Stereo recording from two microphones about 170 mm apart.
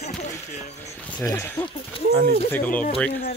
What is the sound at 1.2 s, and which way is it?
Speech, 15° left (ahead or behind).